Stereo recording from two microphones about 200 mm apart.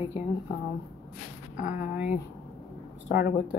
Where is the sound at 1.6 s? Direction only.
40° left (ahead or behind).